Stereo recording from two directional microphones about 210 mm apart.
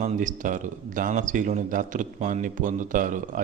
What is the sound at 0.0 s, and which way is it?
A man's voice, 35° right (ahead or behind).